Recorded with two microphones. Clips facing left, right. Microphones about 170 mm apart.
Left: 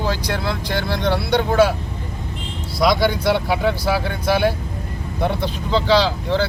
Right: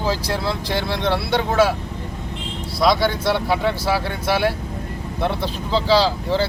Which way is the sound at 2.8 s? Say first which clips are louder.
Left 1 dB; centre (ahead or behind).